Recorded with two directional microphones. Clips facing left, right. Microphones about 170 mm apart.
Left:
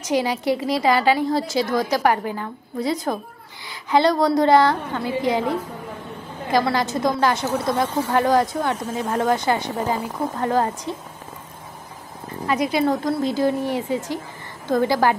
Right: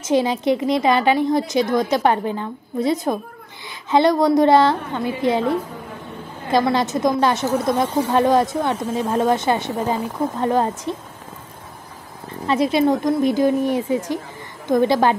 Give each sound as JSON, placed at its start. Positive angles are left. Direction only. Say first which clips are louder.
{"t": 0.0, "sound": "a woman's voice", "louder": "right 3 dB", "side_deg": -20}
{"t": 6.5, "sound": "a woman's voice", "louder": "right 2 dB", "side_deg": -20}
{"t": 12.4, "sound": "a woman's voice", "louder": "right 3 dB", "side_deg": -25}